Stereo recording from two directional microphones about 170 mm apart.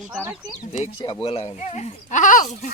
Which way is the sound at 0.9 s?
25° left (ahead or behind).